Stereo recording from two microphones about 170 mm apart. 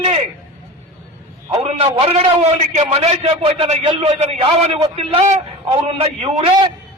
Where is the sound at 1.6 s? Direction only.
35° right (ahead or behind).